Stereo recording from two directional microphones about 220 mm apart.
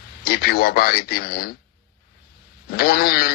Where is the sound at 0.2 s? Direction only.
45° left (ahead or behind).